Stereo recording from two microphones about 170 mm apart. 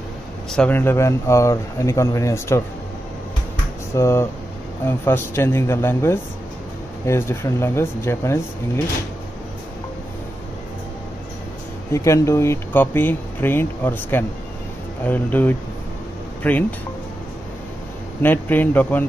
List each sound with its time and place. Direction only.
0.5 s speech: 5° left (ahead or behind)
3.9 s speech: 15° left (ahead or behind)
11.9 s speech: 15° left (ahead or behind)
18.2 s speech: 10° left (ahead or behind)